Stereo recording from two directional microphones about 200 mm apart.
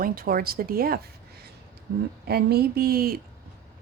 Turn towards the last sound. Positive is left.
turn(degrees=-50)  # may be behind; listen again after turning